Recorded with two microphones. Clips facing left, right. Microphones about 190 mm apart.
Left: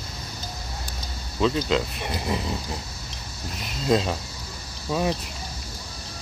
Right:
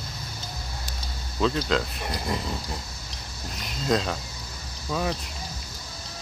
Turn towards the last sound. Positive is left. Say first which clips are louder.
# left 3 dB
turn(degrees=15)  # may be behind; listen again after turning